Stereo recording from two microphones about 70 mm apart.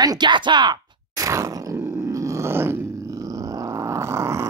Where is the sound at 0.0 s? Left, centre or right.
Right.